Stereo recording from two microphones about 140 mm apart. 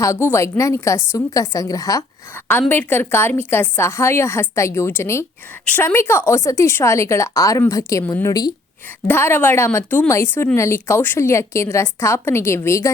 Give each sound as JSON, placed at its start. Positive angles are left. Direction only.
{"t": 0.0, "sound": "a woman's voice", "side_deg": 20}
{"t": 9.0, "sound": "a woman's voice", "side_deg": 15}